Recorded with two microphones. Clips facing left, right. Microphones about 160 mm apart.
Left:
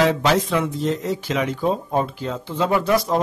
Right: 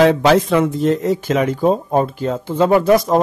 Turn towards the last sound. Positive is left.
turn(degrees=-45)  # may be behind; listen again after turning